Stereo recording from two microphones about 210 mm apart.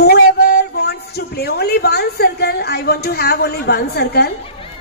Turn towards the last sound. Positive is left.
turn(degrees=50)  # may be behind; listen again after turning